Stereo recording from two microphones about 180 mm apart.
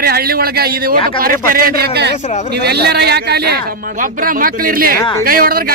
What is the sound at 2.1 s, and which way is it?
Speech, 40° left (ahead or behind).